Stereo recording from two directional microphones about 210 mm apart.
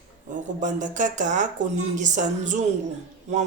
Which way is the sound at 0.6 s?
35° right (ahead or behind).